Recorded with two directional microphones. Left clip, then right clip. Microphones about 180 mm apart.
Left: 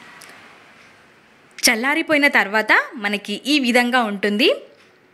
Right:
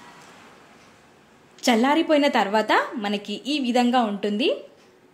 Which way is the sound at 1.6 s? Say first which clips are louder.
Left 2 dB; 15° left (ahead or behind).